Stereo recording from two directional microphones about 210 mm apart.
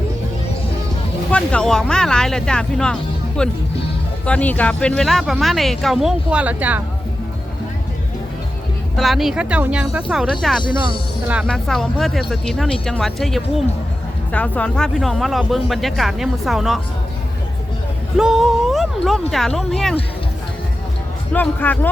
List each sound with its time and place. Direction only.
1.3 s speech: 5° left (ahead or behind)
9.0 s speech: centre (ahead or behind)
10.6 s speech: 20° left (ahead or behind)
11.4 s speech: centre (ahead or behind)
18.2 s speech: centre (ahead or behind)
21.3 s speech: 10° left (ahead or behind)